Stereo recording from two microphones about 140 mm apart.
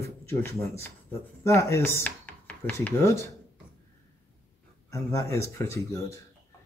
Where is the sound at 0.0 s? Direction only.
20° left (ahead or behind).